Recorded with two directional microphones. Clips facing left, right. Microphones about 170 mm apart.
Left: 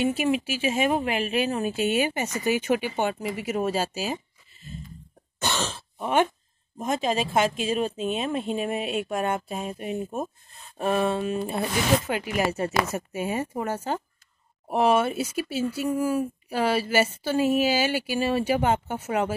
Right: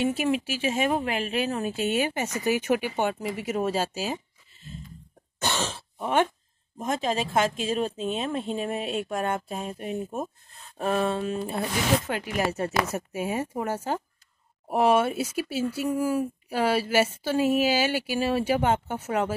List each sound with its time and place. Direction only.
0.0 s speech: 5° left (ahead or behind)
5.4 s throat clearing: 10° right (ahead or behind)
6.8 s speech: 10° left (ahead or behind)